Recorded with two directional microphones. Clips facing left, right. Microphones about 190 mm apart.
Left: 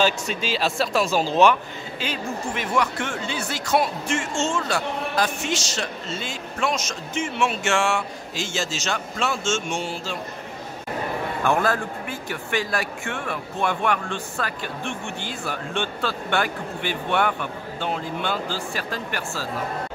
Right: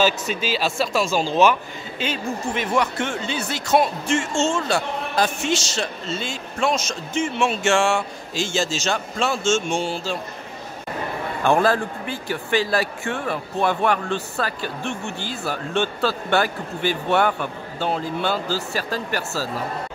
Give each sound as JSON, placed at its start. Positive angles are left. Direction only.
{"t": 0.0, "sound": "speech", "side_deg": -5}
{"t": 2.0, "sound": "speech", "side_deg": -25}
{"t": 11.4, "sound": "speech", "side_deg": -30}